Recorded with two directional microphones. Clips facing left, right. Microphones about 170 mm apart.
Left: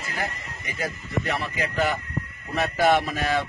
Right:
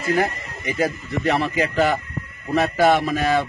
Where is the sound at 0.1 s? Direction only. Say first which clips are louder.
Right 12 dB; 85° right.